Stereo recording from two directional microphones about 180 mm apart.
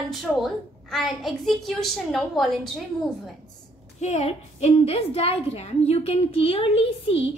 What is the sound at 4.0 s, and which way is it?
A woman's voice, 40° left (ahead or behind).